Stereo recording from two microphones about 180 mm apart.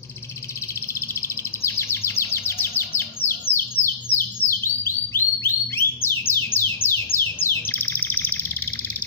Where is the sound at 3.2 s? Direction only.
40° left (ahead or behind).